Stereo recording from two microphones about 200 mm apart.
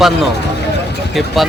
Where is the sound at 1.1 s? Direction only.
Centre (ahead or behind).